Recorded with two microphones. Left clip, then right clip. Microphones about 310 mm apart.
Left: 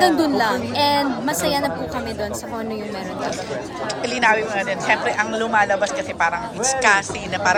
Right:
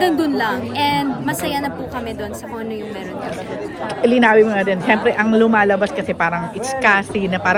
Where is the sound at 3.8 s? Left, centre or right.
Right.